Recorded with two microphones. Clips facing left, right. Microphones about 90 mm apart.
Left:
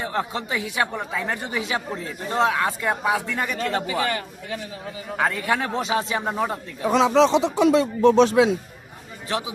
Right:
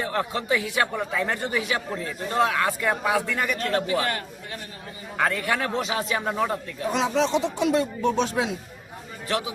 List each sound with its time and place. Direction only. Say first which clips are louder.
0.0 s speech: even; 20° left (ahead or behind)
5.1 s speech: left 1 dB; 5° left (ahead or behind)
5.5 s speech: left 2 dB; 20° left (ahead or behind)
6.3 s speech: right 1 dB; 15° left (ahead or behind)
6.8 s speech: left 6 dB; 90° left